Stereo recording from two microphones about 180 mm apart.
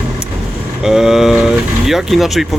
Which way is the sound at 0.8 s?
Centre (ahead or behind).